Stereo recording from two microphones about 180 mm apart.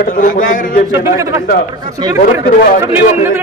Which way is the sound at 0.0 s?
50° left (ahead or behind).